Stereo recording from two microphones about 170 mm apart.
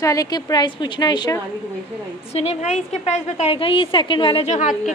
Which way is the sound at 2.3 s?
40° left (ahead or behind).